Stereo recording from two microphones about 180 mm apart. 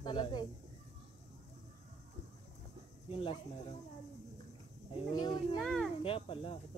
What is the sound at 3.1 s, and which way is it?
Speech, 30° left (ahead or behind).